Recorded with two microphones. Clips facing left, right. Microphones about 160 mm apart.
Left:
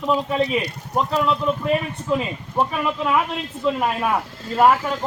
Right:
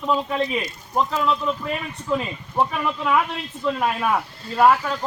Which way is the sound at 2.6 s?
15° left (ahead or behind).